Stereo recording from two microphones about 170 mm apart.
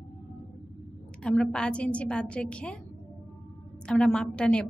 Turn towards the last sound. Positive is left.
turn(degrees=5)  # may be behind; listen again after turning